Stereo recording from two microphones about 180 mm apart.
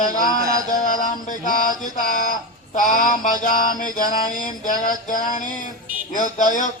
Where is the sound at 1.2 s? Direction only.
45° left (ahead or behind).